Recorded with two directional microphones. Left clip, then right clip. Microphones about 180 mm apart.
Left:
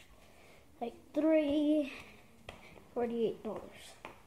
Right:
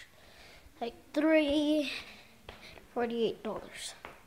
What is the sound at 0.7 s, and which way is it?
A child's voice, 10° right (ahead or behind).